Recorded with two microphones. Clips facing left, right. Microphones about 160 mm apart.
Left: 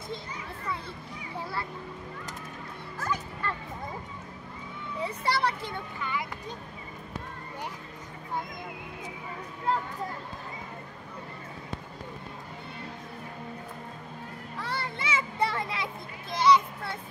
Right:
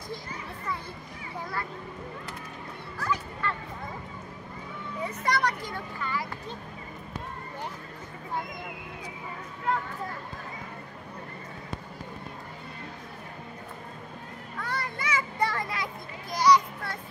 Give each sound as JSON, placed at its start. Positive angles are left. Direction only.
{"t": 3.0, "sound": "music", "side_deg": 45}
{"t": 5.0, "sound": "a sound", "side_deg": 30}
{"t": 14.6, "sound": "children playing", "side_deg": 30}